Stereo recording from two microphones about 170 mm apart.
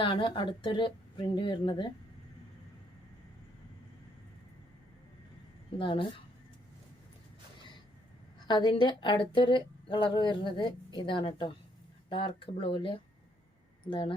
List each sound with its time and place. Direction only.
0.0 s speech: 30° left (ahead or behind)
5.8 s speech: 30° left (ahead or behind)
8.4 s speech: 25° left (ahead or behind)